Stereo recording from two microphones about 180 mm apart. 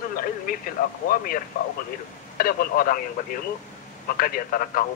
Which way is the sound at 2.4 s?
55° left (ahead or behind).